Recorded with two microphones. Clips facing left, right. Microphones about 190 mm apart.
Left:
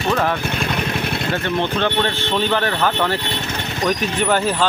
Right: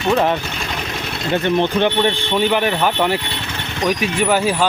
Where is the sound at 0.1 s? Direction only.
20° right (ahead or behind).